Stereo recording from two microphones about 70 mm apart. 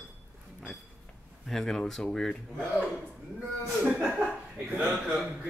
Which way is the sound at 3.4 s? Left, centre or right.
Centre.